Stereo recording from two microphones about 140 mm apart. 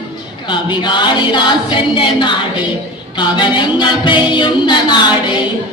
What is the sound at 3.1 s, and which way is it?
A capella, 35° left (ahead or behind).